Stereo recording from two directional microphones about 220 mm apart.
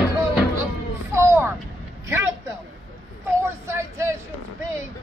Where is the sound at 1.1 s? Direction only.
10° right (ahead or behind).